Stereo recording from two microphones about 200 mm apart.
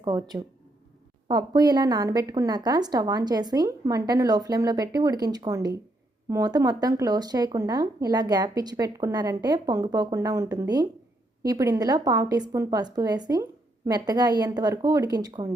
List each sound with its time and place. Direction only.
0.0 s speech: 20° right (ahead or behind)